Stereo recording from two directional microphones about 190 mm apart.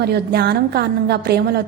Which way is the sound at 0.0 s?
60° right (ahead or behind).